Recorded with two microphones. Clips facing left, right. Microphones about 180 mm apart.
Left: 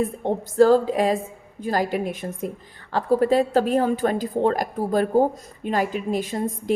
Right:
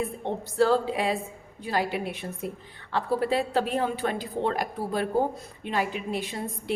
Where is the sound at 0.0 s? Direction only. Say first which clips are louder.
Left 6 dB; 45° left (ahead or behind).